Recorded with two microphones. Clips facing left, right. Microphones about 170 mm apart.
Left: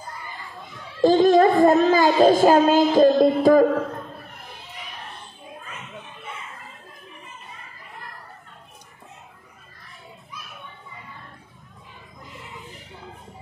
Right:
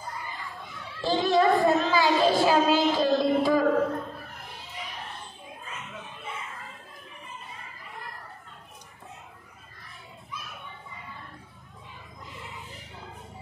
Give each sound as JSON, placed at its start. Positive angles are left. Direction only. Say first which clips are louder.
{"t": 1.0, "sound": "speech", "louder": "left 8 dB", "side_deg": 45}